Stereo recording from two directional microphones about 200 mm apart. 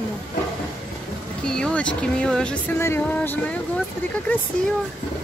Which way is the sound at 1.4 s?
5° left (ahead or behind).